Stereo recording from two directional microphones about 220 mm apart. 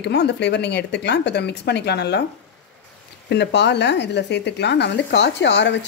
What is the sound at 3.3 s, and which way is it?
Speech, 50° left (ahead or behind).